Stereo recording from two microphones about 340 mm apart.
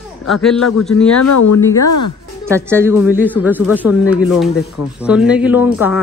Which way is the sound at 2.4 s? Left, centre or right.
Centre.